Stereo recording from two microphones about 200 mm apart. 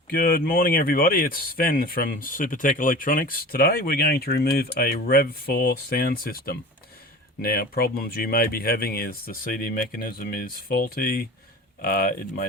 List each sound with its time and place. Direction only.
0.1 s speech: 45° left (ahead or behind)